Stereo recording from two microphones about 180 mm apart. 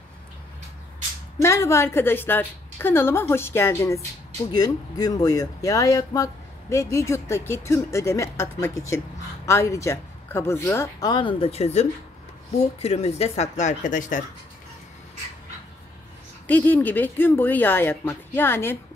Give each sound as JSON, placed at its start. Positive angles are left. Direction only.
{"t": 1.4, "sound": "speech", "side_deg": 15}
{"t": 16.4, "sound": "speech", "side_deg": 10}